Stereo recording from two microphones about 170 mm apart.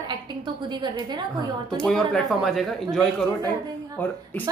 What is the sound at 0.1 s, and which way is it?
A woman's voice, 25° right (ahead or behind).